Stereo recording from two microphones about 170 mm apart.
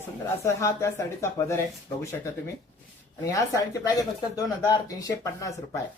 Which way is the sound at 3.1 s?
20° left (ahead or behind).